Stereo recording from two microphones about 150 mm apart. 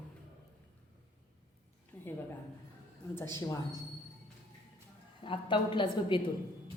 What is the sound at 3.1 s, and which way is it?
Speech, 15° left (ahead or behind).